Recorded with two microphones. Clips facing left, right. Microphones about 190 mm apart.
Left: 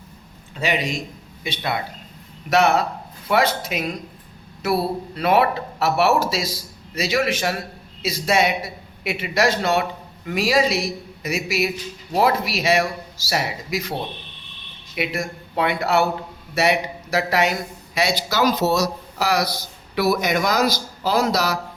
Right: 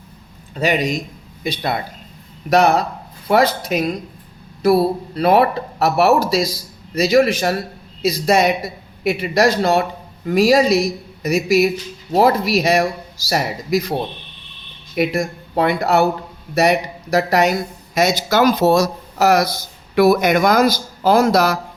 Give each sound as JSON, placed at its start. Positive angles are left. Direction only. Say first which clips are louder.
{"t": 0.6, "sound": "speech", "louder": "right 5 dB", "side_deg": -40}
{"t": 14.9, "sound": "speech", "louder": "right 7 dB", "side_deg": -40}